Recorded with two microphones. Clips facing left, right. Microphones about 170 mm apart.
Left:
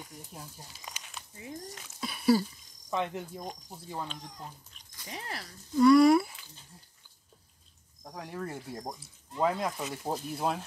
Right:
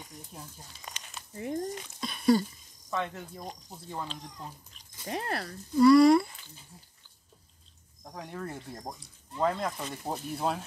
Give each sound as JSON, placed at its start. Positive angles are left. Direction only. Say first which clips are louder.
{"t": 0.0, "sound": "snake", "louder": "even", "side_deg": 5}
{"t": 1.3, "sound": "speech", "louder": "right 9 dB", "side_deg": -55}
{"t": 2.0, "sound": "a sound", "louder": "right 1 dB", "side_deg": 5}
{"t": 2.9, "sound": "speech", "louder": "left 1 dB", "side_deg": 15}
{"t": 5.0, "sound": "speech", "louder": "right 8 dB", "side_deg": -60}
{"t": 5.8, "sound": "speech", "louder": "right 1 dB", "side_deg": 0}
{"t": 8.0, "sound": "speech", "louder": "left 1 dB", "side_deg": 0}